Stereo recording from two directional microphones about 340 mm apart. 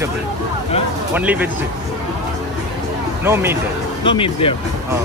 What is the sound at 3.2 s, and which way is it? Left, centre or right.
Speech, centre.